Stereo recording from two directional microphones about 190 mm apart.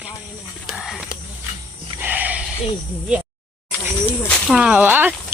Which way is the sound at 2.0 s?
10° right (ahead or behind).